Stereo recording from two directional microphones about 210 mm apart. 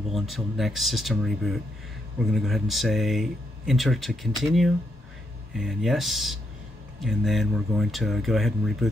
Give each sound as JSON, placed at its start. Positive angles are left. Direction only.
{"t": 0.1, "sound": "speech", "side_deg": 0}